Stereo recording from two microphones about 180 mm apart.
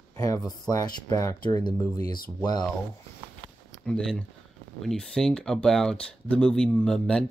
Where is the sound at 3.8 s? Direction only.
5° left (ahead or behind).